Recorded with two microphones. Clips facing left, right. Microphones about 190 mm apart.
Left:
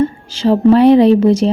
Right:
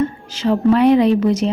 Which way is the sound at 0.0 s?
30° left (ahead or behind).